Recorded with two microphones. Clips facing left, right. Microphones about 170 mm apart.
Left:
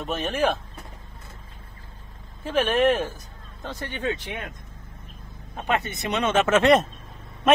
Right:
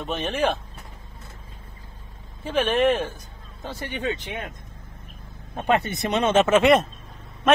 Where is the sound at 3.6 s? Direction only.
10° right (ahead or behind).